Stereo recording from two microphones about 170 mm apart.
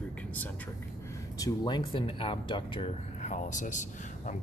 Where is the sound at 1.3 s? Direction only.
25° left (ahead or behind).